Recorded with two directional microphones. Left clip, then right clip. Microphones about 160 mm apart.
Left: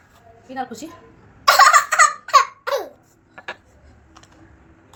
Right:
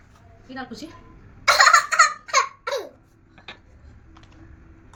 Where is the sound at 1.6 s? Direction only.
15° right (ahead or behind).